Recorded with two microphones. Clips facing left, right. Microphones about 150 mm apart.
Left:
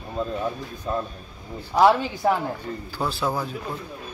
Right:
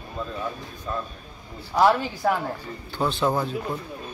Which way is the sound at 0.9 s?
35° left (ahead or behind).